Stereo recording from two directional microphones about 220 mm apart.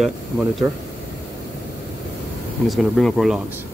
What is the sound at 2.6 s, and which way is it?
Speech, centre (ahead or behind).